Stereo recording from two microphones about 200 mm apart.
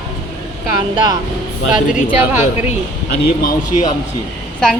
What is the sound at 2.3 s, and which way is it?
Speech, 10° right (ahead or behind).